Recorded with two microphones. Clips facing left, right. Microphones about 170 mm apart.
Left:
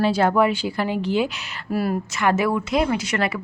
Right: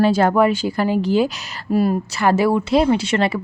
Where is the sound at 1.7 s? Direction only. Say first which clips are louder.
Right 5 dB; 25° right (ahead or behind).